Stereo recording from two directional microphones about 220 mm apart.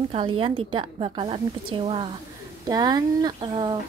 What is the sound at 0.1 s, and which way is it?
Speech, 25° right (ahead or behind).